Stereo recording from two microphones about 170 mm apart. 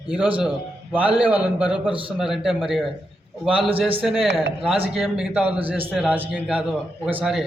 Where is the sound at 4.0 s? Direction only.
5° right (ahead or behind).